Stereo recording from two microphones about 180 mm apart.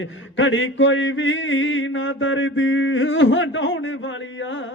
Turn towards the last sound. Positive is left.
turn(degrees=90)